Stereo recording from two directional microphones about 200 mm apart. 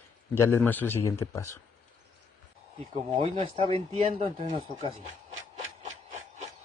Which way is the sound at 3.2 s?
30° right (ahead or behind).